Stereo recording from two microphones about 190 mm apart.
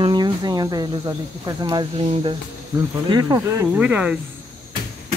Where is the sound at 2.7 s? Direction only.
15° right (ahead or behind).